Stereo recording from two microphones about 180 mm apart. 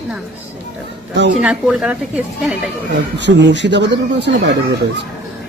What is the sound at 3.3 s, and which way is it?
Speech, 80° right.